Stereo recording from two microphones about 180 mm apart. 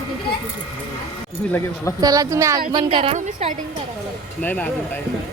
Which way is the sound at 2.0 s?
20° right (ahead or behind).